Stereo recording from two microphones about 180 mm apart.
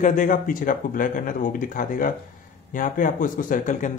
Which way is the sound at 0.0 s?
45° left (ahead or behind).